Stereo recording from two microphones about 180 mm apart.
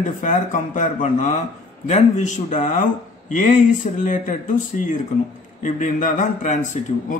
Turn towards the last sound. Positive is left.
turn(degrees=45)  # may be behind; listen again after turning